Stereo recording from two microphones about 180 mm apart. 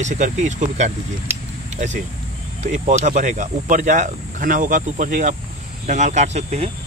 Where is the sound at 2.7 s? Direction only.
45° right (ahead or behind).